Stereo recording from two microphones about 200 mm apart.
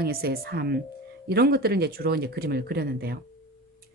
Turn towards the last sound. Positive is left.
turn(degrees=-50)  # may be behind; listen again after turning